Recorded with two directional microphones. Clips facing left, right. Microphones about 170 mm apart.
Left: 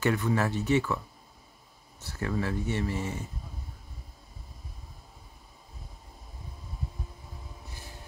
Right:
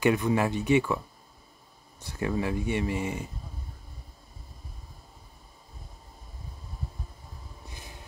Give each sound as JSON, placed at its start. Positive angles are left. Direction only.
{"t": 0.0, "sound": "speech", "side_deg": -15}